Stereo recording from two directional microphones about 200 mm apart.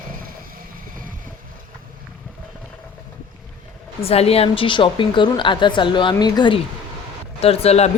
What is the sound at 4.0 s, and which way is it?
A woman's voice, 30° left (ahead or behind).